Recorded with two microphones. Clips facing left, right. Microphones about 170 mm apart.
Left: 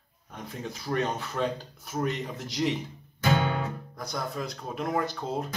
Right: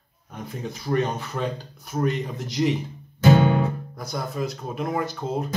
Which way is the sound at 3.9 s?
5° right (ahead or behind).